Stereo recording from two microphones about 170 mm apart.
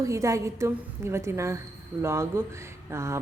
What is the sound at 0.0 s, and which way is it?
A woman's voice, 20° right (ahead or behind).